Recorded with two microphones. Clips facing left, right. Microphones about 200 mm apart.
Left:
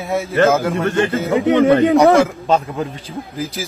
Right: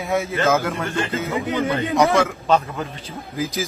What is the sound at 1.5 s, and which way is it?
Speech, 60° left (ahead or behind).